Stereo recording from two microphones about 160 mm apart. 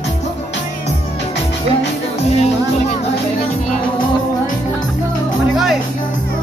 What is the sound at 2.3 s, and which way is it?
Music, 40° left (ahead or behind).